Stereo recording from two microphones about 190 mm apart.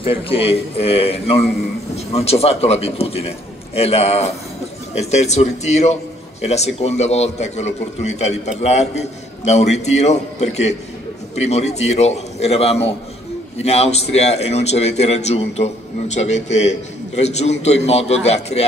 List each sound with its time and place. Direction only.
0.0 s a man's voice: 30° left (ahead or behind)